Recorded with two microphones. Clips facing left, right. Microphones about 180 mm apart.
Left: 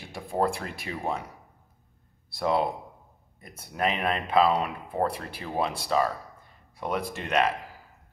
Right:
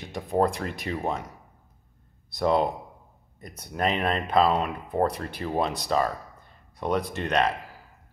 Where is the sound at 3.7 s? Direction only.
5° left (ahead or behind).